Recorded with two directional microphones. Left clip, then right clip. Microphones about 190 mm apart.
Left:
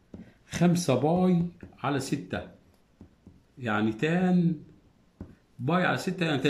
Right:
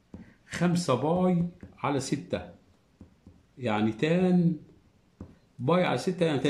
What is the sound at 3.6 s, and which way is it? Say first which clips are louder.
Speech: even; 15° right (ahead or behind).